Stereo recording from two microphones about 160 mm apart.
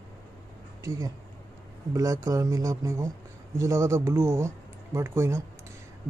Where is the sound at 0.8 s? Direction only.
20° right (ahead or behind).